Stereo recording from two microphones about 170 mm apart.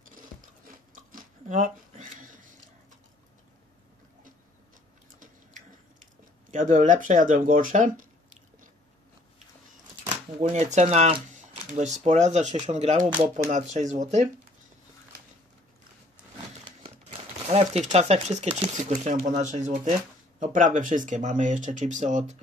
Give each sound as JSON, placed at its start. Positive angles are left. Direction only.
{"t": 0.9, "sound": "biting", "side_deg": -50}
{"t": 5.2, "sound": "a sound", "side_deg": -50}
{"t": 6.5, "sound": "speech", "side_deg": -50}
{"t": 10.5, "sound": "speech", "side_deg": -40}
{"t": 17.5, "sound": "speech", "side_deg": -40}